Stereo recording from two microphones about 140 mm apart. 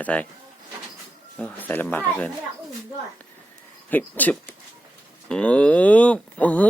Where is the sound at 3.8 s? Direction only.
10° left (ahead or behind).